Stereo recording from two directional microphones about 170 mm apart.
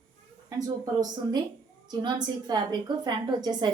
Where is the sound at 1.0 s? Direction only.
25° right (ahead or behind).